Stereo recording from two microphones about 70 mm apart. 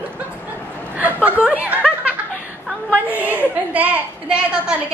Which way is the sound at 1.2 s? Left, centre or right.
Right.